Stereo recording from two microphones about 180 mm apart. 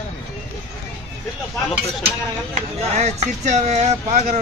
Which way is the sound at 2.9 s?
40° right (ahead or behind).